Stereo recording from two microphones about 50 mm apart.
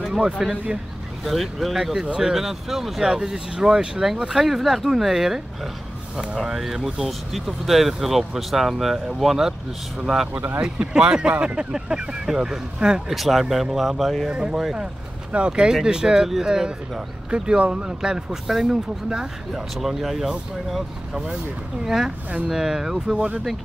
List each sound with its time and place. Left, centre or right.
0.1 s speech: centre
1.2 s speech: centre
10.6 s speech: centre
13.1 s speech: centre
14.3 s speech: centre
23.1 s speech: right